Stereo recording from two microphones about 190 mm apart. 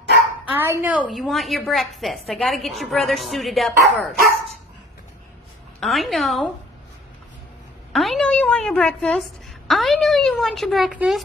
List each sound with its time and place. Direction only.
0.5 s a woman's voice: 10° right (ahead or behind)
5.8 s a woman's voice: centre (ahead or behind)
7.9 s a woman's voice: centre (ahead or behind)